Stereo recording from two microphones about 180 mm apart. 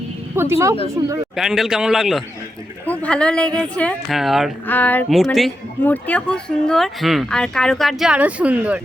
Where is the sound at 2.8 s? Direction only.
10° left (ahead or behind).